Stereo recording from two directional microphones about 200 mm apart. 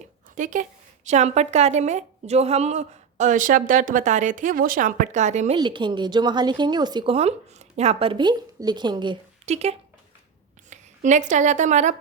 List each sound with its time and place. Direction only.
0.3 s a woman's voice: 40° right (ahead or behind)
5.5 s a woman's voice: 25° right (ahead or behind)